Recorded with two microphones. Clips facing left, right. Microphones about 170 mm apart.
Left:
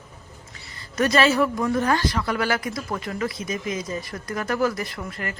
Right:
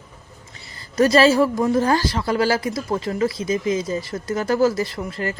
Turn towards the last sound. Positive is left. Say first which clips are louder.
# right 6 dB
turn(degrees=-30)  # may be behind; listen again after turning